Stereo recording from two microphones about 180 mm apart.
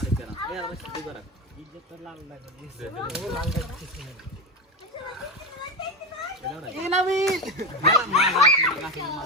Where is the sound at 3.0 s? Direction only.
Centre (ahead or behind).